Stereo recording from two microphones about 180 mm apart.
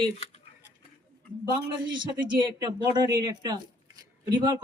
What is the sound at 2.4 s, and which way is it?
Speech, 20° right (ahead or behind).